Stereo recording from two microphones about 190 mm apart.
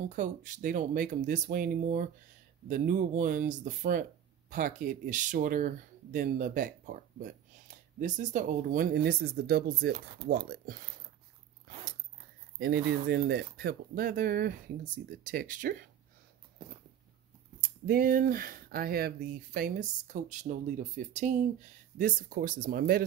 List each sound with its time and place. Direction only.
0.1 s speech: 40° right (ahead or behind)
12.5 s speech: 55° right (ahead or behind)
17.6 s speech: 55° right (ahead or behind)